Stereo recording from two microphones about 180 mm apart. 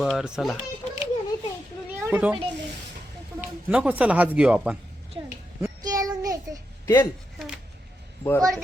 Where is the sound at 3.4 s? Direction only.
5° right (ahead or behind).